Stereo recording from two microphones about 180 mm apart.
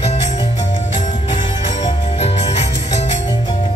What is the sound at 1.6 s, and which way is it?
Music, 35° left (ahead or behind).